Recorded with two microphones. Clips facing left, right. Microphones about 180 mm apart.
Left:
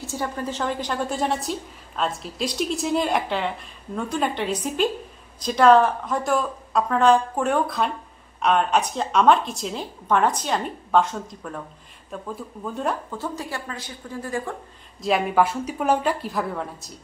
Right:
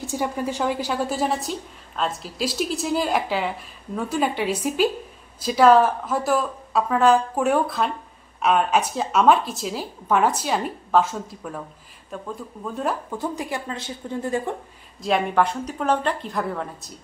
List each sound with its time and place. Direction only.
0.0 s a woman's voice: 15° right (ahead or behind)
13.1 s a woman's voice: 15° right (ahead or behind)
15.0 s a woman's voice: centre (ahead or behind)